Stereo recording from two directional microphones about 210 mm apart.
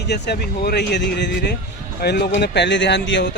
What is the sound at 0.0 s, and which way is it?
Speech, 50° left (ahead or behind).